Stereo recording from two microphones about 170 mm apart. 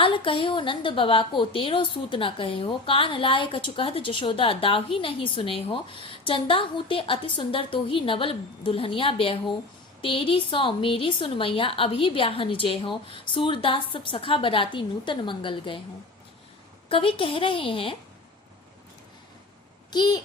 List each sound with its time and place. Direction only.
0.0 s a woman's voice: 30° left (ahead or behind)
16.9 s a woman's voice: 30° left (ahead or behind)
19.9 s a child's voice: 25° left (ahead or behind)